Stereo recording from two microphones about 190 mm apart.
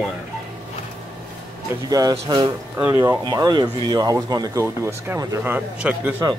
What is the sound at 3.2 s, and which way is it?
Speech, 20° right (ahead or behind).